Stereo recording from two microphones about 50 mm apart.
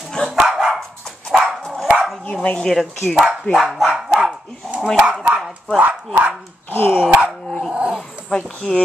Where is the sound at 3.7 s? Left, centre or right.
Centre.